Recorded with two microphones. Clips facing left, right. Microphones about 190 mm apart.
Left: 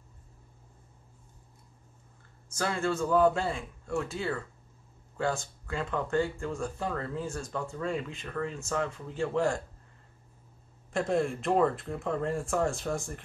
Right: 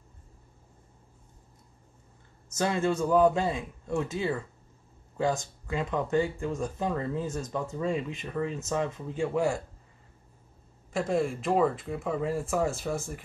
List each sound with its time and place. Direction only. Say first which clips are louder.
2.5 s a man's voice: right 3 dB; 20° right (ahead or behind)
10.9 s speech: right 1 dB; centre (ahead or behind)